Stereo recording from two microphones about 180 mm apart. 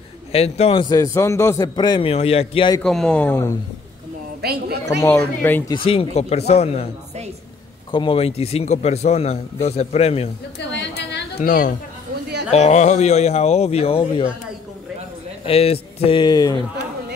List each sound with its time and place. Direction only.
0.3 s a man's voice: 35° left (ahead or behind)
2.8 s speech: 5° left (ahead or behind)
4.4 s a woman's voice: 60° right (ahead or behind)
4.8 s speech: 15° left (ahead or behind)
5.9 s speech: 35° left (ahead or behind)
7.9 s speech: 30° left (ahead or behind)
10.7 s a sound: 75° left (ahead or behind)
11.4 s speech: 50° left (ahead or behind)
12.4 s speech: 35° left (ahead or behind)
15.4 s speech: 35° left (ahead or behind)